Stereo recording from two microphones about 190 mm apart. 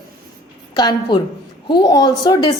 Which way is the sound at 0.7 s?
25° left (ahead or behind).